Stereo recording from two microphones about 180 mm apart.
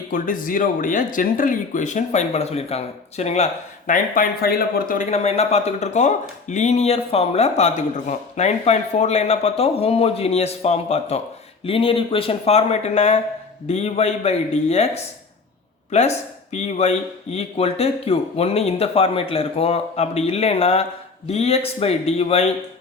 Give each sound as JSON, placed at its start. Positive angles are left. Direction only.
{"t": 0.1, "sound": "speech", "side_deg": 50}
{"t": 5.1, "sound": "speech", "side_deg": 35}
{"t": 15.9, "sound": "speech", "side_deg": 40}